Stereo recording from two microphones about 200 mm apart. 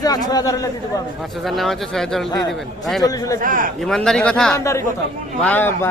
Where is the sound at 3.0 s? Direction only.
20° left (ahead or behind).